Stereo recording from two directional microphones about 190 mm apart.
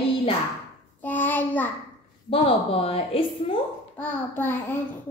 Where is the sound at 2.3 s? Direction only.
30° left (ahead or behind).